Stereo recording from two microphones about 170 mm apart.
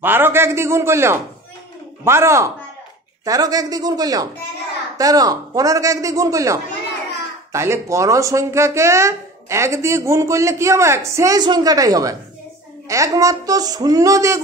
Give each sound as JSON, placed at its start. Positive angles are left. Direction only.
{"t": 0.0, "sound": "a man's voice", "side_deg": -10}